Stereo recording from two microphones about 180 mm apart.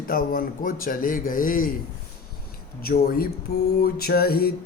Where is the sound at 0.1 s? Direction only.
50° left (ahead or behind).